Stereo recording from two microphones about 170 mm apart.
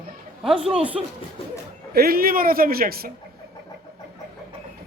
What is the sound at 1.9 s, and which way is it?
Speech, 65° right (ahead or behind).